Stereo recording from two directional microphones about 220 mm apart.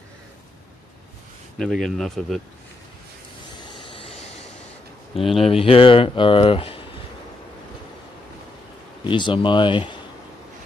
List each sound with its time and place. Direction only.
1.6 s speech: centre (ahead or behind)
3.6 s vehicle: 25° left (ahead or behind)
5.4 s speech: 25° left (ahead or behind)
9.0 s speech: 20° left (ahead or behind)